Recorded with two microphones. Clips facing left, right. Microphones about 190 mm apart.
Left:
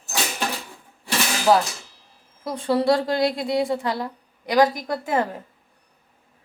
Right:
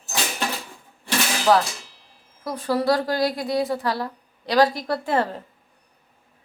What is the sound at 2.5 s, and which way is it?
A woman's voice, 25° left (ahead or behind).